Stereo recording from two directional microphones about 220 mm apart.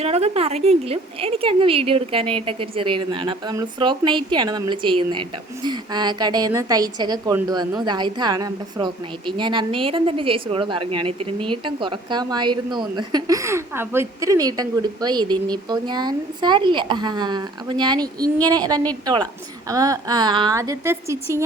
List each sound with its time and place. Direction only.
0.0 s a woman's voice: 30° right (ahead or behind); by 21.4 s 10° right (ahead or behind)